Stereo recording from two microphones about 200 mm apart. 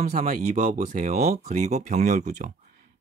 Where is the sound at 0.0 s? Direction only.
35° right (ahead or behind).